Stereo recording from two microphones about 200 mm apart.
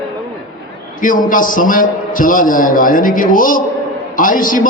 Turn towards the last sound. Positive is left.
turn(degrees=40)  # may be behind; listen again after turning